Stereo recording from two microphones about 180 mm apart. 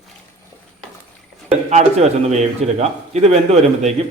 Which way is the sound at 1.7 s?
40° right (ahead or behind).